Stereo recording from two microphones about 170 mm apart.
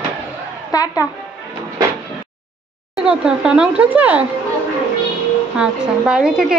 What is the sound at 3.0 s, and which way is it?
A woman's voice, 5° right (ahead or behind).